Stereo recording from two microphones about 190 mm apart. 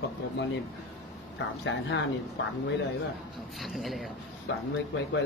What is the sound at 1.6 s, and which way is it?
Speech, 70° left (ahead or behind).